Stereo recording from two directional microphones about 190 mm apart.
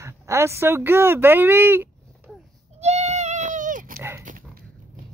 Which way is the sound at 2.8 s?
35° right (ahead or behind).